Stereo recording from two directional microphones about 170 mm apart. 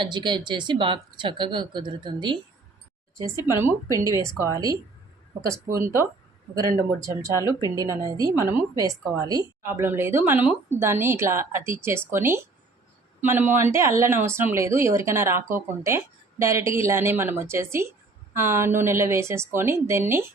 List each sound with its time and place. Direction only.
0.0 s speech: 25° right (ahead or behind)